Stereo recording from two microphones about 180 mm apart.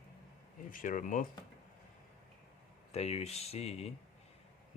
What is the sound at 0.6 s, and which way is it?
Speech, 50° left (ahead or behind).